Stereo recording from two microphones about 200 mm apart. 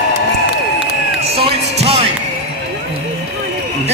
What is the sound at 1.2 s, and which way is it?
Music, 30° right (ahead or behind).